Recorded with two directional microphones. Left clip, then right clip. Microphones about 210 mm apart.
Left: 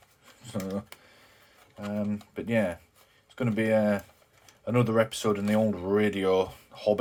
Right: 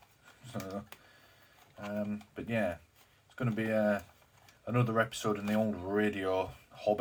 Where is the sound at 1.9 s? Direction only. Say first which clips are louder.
Left 5 dB; 50° left (ahead or behind).